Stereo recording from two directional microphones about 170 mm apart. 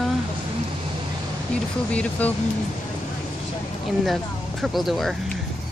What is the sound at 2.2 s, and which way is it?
Speech, 10° left (ahead or behind).